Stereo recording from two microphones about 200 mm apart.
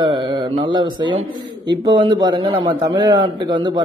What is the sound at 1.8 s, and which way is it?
A man's voice, 20° right (ahead or behind).